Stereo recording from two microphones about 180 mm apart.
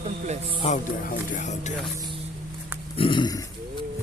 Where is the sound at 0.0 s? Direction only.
40° right (ahead or behind).